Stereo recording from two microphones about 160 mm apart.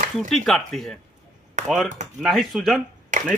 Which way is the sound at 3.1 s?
55° right (ahead or behind).